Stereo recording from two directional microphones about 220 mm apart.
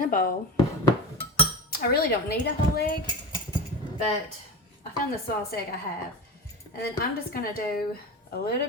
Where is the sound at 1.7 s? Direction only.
45° left (ahead or behind).